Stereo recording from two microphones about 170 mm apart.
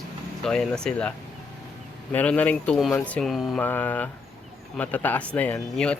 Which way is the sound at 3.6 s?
10° left (ahead or behind).